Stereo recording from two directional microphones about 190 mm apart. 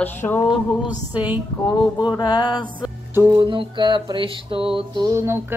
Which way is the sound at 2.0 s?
20° left (ahead or behind).